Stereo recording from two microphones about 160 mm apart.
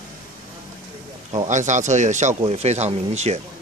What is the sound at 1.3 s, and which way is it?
Speech, 50° right (ahead or behind).